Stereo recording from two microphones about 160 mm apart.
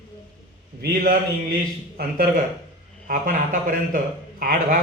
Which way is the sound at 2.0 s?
65° right (ahead or behind).